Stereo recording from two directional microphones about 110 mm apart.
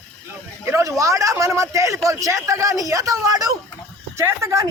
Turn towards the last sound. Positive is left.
turn(degrees=-30)  # may be behind; listen again after turning